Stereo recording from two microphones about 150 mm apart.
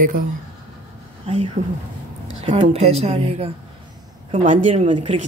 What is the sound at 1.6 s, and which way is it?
Speech, 55° right (ahead or behind).